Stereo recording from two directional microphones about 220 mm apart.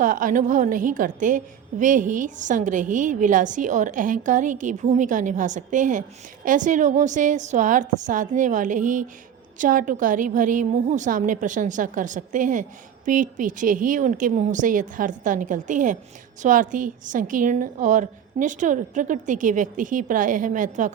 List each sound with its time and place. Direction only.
0.0 s a woman's voice: 35° right (ahead or behind)